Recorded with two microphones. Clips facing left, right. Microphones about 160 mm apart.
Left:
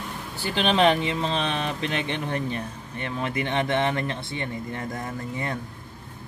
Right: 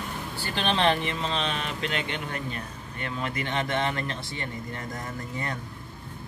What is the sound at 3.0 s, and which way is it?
Speech, 20° left (ahead or behind).